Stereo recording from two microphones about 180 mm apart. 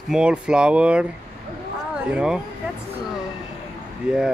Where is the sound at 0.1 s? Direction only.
5° right (ahead or behind).